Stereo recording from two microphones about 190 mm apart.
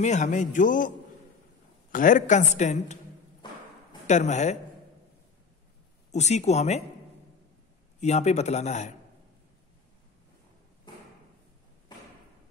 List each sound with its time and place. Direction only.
0.0 s a man's voice: 40° left (ahead or behind)
3.4 s a sound: 25° left (ahead or behind)
4.1 s a man's voice: 35° left (ahead or behind)
6.1 s a man's voice: 35° left (ahead or behind)
8.0 s a man's voice: 35° left (ahead or behind)